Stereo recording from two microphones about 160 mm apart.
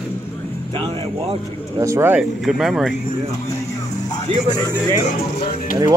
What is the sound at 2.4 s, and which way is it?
Speech, centre (ahead or behind).